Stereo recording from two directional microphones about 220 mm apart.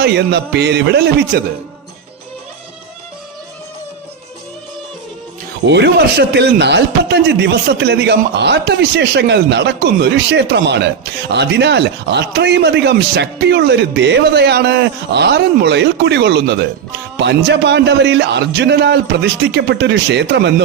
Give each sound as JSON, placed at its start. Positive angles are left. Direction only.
{"t": 0.0, "sound": "speech", "side_deg": -50}
{"t": 5.6, "sound": "speech", "side_deg": -50}